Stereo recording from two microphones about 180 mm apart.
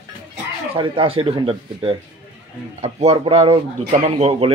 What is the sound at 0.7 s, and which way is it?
Speech, 30° right (ahead or behind).